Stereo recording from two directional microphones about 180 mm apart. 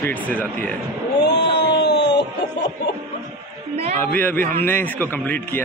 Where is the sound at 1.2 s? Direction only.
75° left (ahead or behind).